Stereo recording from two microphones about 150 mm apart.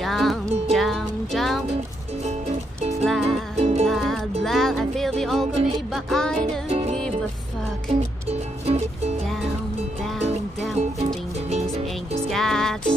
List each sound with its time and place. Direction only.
0.0 s music: centre (ahead or behind)
3.1 s music: centre (ahead or behind)
3.5 s music: 45° right (ahead or behind)
3.8 s music: centre (ahead or behind)
6.7 s music: 45° right (ahead or behind)
8.6 s music: 45° right (ahead or behind)
10.1 s music: centre (ahead or behind)
12.2 s music: centre (ahead or behind)